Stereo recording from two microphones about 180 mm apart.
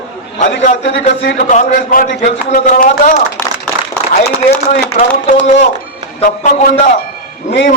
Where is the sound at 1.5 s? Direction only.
45° left (ahead or behind).